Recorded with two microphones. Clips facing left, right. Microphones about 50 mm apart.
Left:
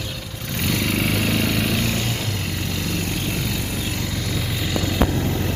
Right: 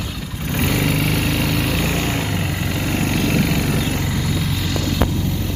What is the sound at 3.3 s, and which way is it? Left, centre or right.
Vehicle, right.